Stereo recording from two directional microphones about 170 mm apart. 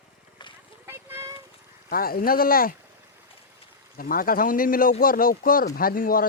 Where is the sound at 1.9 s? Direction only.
60° left (ahead or behind).